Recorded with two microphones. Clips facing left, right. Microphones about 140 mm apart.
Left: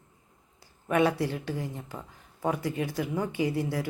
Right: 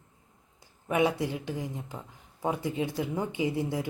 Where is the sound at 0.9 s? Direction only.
15° right (ahead or behind).